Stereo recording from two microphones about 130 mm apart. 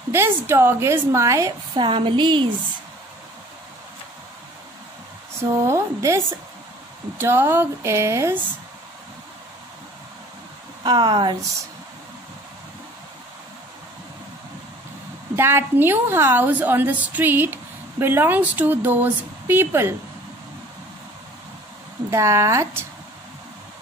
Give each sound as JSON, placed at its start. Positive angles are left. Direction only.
{"t": 0.1, "sound": "a woman's voice", "side_deg": -20}
{"t": 1.8, "sound": "speech", "side_deg": -40}
{"t": 5.4, "sound": "a woman's voice", "side_deg": -20}
{"t": 10.8, "sound": "speech", "side_deg": -35}
{"t": 15.3, "sound": "a woman's voice", "side_deg": -20}
{"t": 22.1, "sound": "a woman's voice", "side_deg": -25}